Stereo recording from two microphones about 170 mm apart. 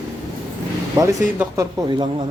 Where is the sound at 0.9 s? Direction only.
20° right (ahead or behind).